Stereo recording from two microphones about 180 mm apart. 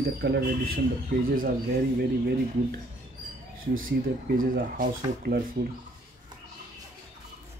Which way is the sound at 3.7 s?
90° right.